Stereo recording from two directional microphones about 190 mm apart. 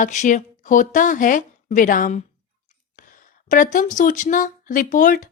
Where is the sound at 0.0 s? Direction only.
40° left (ahead or behind).